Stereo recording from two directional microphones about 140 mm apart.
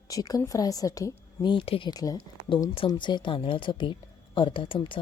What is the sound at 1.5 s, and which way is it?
A woman's voice, 40° left (ahead or behind).